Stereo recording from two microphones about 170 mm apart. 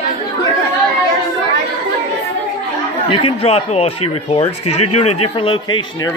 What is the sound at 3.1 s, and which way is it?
Speech, 35° left (ahead or behind).